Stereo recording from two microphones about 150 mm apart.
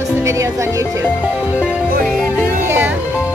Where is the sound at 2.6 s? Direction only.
15° right (ahead or behind).